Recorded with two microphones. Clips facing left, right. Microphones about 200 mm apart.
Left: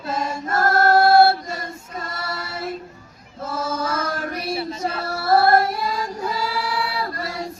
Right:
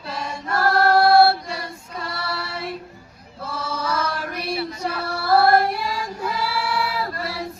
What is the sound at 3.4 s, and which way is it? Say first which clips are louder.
Chant: left 3 dB; 45° left (ahead or behind).